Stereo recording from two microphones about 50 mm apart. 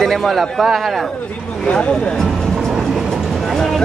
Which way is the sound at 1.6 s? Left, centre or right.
Left.